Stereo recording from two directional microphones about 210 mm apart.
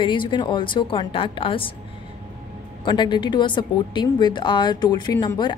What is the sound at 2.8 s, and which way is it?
A woman's voice, 20° left (ahead or behind).